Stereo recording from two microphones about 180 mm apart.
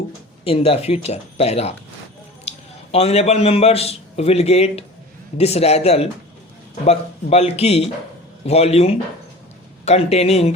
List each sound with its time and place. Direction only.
0.4 s a man's voice: 35° left (ahead or behind)